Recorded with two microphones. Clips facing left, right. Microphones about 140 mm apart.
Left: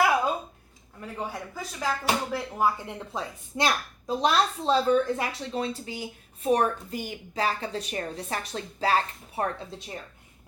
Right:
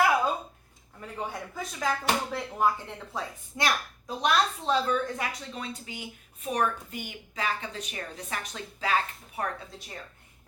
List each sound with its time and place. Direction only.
1.0 s speech: 5° left (ahead or behind)
3.6 s a woman's voice: 25° left (ahead or behind)